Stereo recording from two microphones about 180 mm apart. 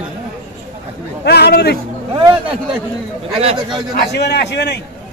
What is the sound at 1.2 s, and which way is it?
Speech, 65° left (ahead or behind).